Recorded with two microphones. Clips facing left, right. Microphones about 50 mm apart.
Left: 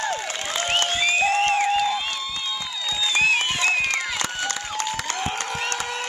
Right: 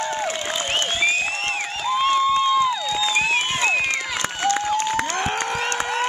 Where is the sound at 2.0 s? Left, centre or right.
Right.